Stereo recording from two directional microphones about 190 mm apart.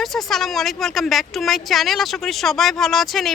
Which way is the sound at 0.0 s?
Centre (ahead or behind).